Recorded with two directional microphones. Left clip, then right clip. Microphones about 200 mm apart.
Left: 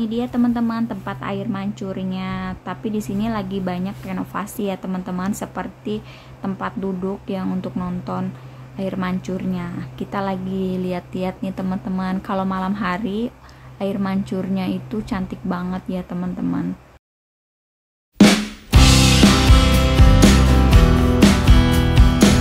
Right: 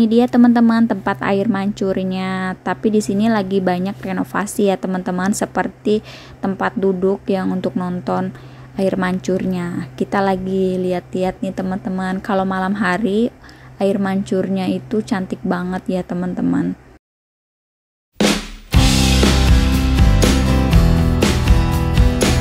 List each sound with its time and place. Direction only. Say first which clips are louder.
0.0 s a woman's voice: right 9 dB; 35° right (ahead or behind)
18.7 s music: left 1 dB; centre (ahead or behind)